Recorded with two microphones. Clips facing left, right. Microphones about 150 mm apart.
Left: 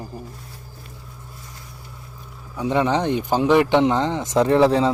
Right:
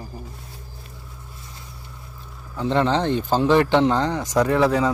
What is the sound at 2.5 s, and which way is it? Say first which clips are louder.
Speech: even; 15° left (ahead or behind).